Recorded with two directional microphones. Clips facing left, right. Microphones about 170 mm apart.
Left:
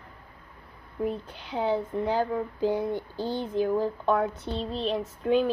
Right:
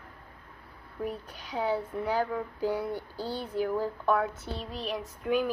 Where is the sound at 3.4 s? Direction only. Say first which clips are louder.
Left 4 dB; 20° left (ahead or behind).